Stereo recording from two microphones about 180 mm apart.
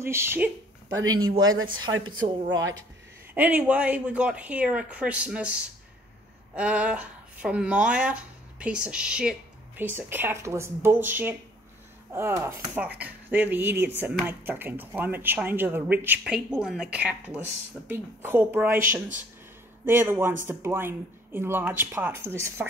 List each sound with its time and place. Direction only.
0.0 s speech: 15° right (ahead or behind)
3.3 s speech: 10° right (ahead or behind)
19.8 s speech: 10° right (ahead or behind)